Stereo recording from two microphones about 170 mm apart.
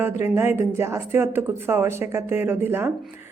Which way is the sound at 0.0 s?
15° right (ahead or behind).